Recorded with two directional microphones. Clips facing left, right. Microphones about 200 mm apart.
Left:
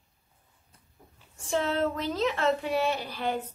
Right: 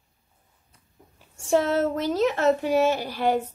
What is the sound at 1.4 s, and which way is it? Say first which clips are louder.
Speech: right 6 dB; 45° right (ahead or behind).